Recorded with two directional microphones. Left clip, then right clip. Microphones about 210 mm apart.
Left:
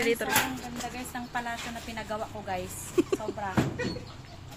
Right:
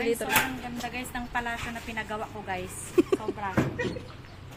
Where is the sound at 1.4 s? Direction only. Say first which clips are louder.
Right 2 dB; 10° left (ahead or behind).